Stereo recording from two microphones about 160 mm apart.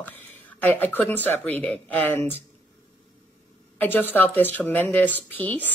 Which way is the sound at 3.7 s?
10° left (ahead or behind).